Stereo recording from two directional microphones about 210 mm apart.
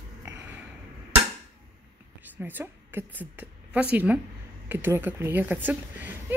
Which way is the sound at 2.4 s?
10° right (ahead or behind).